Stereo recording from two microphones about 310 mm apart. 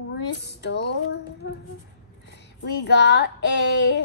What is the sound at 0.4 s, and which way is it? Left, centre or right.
Child singing, left.